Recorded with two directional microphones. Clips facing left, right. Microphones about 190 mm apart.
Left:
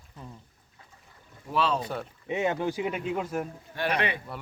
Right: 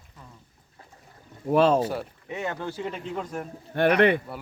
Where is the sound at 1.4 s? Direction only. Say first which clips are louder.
Right 8 dB; 50° right (ahead or behind).